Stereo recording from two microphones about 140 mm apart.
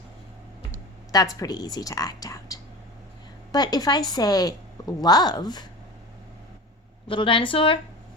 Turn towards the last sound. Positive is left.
turn(degrees=40)  # may be behind; listen again after turning